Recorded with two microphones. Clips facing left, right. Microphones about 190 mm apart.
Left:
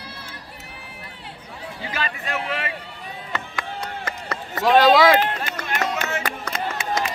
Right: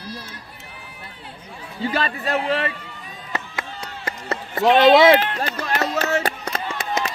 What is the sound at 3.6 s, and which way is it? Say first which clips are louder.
Chop: left 4 dB; 55° left (ahead or behind).